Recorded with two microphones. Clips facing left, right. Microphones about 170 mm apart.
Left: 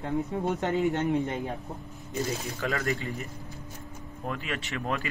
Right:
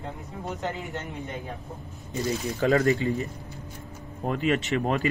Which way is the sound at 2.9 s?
20° right (ahead or behind).